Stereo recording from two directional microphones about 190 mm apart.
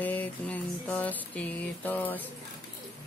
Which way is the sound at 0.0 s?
10° left (ahead or behind).